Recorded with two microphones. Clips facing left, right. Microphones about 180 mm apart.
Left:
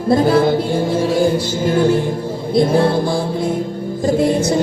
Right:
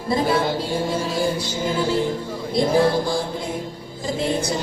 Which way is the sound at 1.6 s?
55° left (ahead or behind).